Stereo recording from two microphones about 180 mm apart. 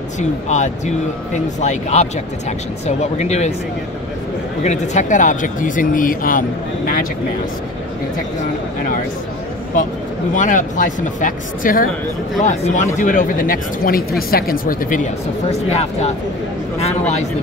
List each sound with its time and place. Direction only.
0.2 s speech: 40° left (ahead or behind)
4.6 s speech: 45° left (ahead or behind)
8.4 s speech: 50° left (ahead or behind)
10.3 s speech: 45° left (ahead or behind)
15.5 s speech: 35° left (ahead or behind)